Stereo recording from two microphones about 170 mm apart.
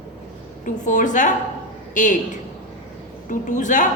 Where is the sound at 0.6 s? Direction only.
50° left (ahead or behind).